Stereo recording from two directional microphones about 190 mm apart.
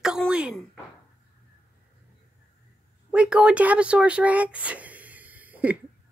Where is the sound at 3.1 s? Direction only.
5° right (ahead or behind).